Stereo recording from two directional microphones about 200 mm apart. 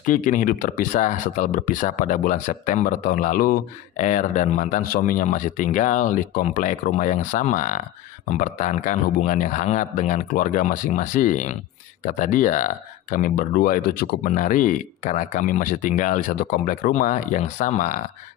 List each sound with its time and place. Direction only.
0.0 s speech: 40° left (ahead or behind)